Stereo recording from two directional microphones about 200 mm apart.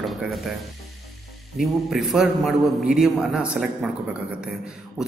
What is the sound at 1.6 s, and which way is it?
A man's voice, centre (ahead or behind).